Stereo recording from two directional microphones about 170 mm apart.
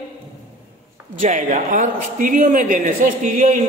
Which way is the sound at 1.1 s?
45° right (ahead or behind).